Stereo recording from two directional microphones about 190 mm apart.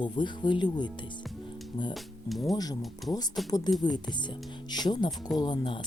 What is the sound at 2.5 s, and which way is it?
Speech, 20° left (ahead or behind).